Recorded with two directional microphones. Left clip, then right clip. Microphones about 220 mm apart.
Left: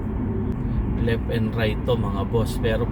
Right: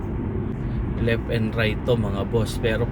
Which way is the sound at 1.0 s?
20° right (ahead or behind).